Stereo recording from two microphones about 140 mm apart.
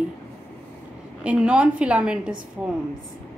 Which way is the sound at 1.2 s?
10° right (ahead or behind).